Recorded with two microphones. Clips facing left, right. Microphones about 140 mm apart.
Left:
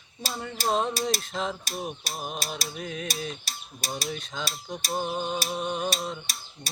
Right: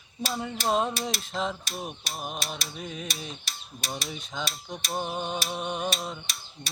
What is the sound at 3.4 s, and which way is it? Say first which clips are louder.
Mechanisms: left 1 dB; 35° left (ahead or behind).